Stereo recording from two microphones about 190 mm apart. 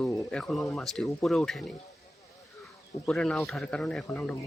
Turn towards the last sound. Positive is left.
turn(degrees=5)  # may be behind; listen again after turning